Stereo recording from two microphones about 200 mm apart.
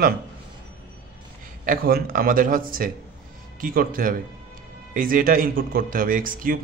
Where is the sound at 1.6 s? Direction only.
45° right (ahead or behind).